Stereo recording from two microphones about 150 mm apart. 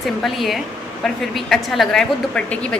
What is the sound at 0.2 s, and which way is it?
A woman's voice, centre (ahead or behind).